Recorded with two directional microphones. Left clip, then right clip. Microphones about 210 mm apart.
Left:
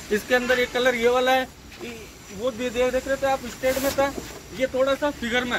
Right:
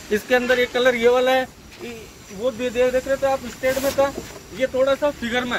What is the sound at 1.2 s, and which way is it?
Speech, 15° left (ahead or behind).